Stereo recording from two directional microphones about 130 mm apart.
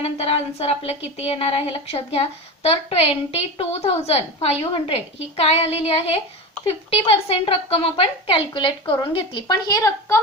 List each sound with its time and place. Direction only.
0.0 s a woman's voice: 50° left (ahead or behind); by 10.2 s 25° left (ahead or behind)